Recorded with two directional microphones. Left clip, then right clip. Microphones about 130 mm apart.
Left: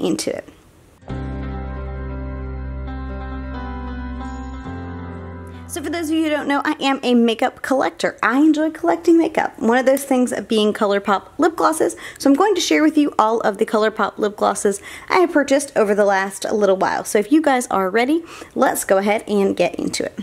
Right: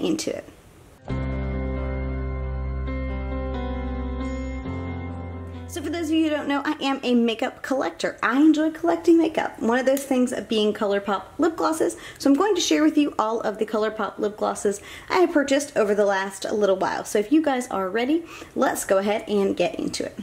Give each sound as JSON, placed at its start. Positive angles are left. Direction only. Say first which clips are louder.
{"t": 0.0, "sound": "a woman's voice", "louder": "left 4 dB", "side_deg": 35}
{"t": 5.8, "sound": "a woman's voice", "louder": "left 3 dB", "side_deg": 40}